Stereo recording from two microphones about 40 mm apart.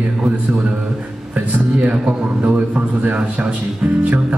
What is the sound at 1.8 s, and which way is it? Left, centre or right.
Speech, right.